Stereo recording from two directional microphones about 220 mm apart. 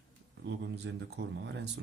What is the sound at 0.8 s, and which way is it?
Speech, 50° right (ahead or behind).